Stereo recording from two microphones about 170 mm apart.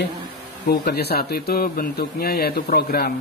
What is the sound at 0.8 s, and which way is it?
A man's voice, 70° left (ahead or behind).